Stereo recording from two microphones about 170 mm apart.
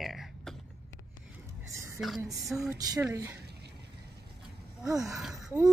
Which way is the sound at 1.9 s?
Centre (ahead or behind).